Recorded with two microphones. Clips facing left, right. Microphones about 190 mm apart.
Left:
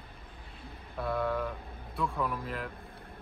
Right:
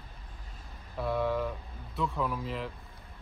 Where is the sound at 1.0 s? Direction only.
Centre (ahead or behind).